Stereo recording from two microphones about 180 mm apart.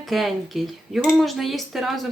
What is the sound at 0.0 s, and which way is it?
Speech, centre (ahead or behind).